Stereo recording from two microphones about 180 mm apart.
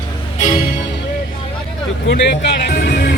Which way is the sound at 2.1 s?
70° left (ahead or behind).